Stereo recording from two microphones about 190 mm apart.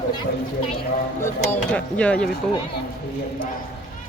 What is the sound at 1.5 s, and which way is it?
Speech, 5° left (ahead or behind).